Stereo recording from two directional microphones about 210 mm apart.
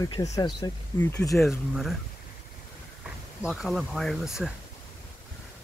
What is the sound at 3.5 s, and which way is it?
Speech, centre (ahead or behind).